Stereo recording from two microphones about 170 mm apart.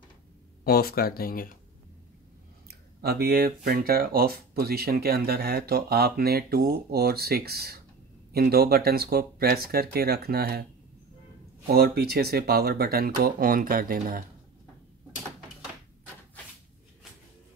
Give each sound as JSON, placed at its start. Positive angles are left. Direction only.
{"t": 0.7, "sound": "speech", "side_deg": 65}
{"t": 2.7, "sound": "speech", "side_deg": -65}